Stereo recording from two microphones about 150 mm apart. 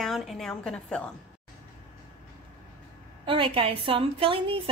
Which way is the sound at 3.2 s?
35° right (ahead or behind).